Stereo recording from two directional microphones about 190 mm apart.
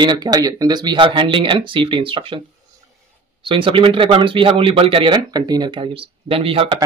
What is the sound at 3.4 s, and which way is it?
Speech, 25° right (ahead or behind).